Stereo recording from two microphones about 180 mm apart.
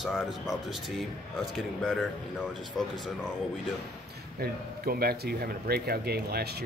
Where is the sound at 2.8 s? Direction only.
Centre (ahead or behind).